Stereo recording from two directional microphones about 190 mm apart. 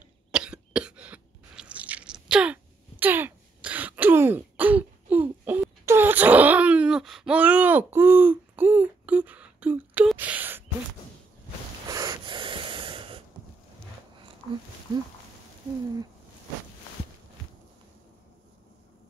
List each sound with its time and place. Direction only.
0.3 s crunch: 5° right (ahead or behind)
5.4 s wail: 10° right (ahead or behind)
11.9 s snort: 20° right (ahead or behind)
14.9 s speech: 20° right (ahead or behind)